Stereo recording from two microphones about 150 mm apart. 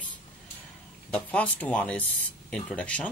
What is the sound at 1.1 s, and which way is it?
Speech, 10° left (ahead or behind).